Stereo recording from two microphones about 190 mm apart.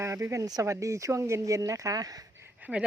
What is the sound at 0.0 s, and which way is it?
Speech, 15° right (ahead or behind).